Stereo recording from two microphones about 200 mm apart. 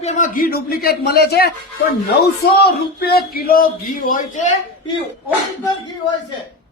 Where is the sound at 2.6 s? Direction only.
50° left (ahead or behind).